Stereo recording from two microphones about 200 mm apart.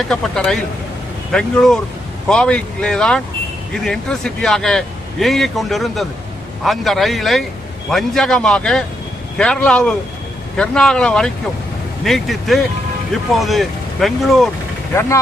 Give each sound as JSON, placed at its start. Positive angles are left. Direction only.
{"t": 0.1, "sound": "a man's voice", "side_deg": 0}